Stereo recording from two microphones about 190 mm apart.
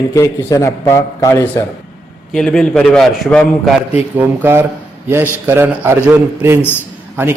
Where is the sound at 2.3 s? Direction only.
Centre (ahead or behind).